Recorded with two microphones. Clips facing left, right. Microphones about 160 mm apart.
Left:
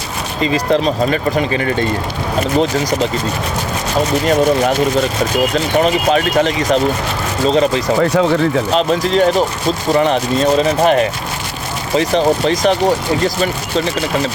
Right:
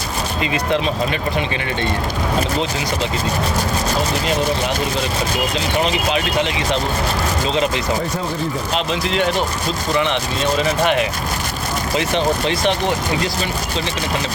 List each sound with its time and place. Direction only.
0.4 s speech: 35° left (ahead or behind)
4.3 s speech: 50° left (ahead or behind)
7.9 s speech: 75° left (ahead or behind)
8.7 s speech: 40° left (ahead or behind)